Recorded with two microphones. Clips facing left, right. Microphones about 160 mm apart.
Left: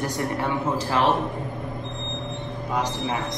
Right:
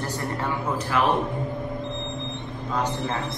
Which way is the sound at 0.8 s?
30° left (ahead or behind).